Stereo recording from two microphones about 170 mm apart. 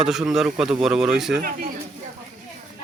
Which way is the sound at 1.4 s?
55° right (ahead or behind).